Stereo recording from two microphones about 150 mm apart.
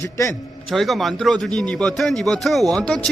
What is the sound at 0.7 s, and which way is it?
Speech, centre (ahead or behind).